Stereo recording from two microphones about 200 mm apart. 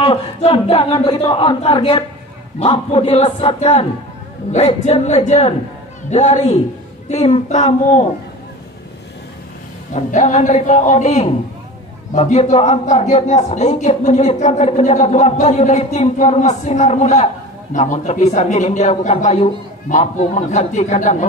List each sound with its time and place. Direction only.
0.0 s a man's voice: 30° left (ahead or behind)
9.9 s a man's voice: 35° left (ahead or behind)